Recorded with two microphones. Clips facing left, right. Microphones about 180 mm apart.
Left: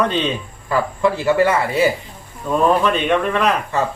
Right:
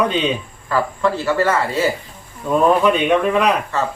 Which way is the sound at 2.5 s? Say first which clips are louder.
Right 2 dB; 10° right (ahead or behind).